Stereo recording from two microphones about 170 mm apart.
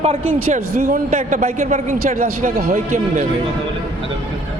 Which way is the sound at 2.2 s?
60° right (ahead or behind).